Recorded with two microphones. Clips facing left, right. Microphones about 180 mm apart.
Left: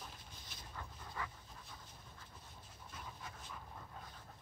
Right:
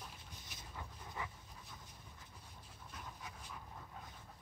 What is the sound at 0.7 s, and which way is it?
Dog, 15° right (ahead or behind).